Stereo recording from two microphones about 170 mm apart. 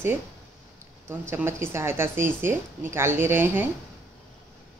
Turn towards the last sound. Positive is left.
turn(degrees=-15)  # may be behind; listen again after turning